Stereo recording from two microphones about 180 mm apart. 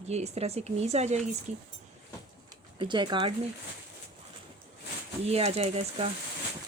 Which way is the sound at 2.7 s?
25° right (ahead or behind).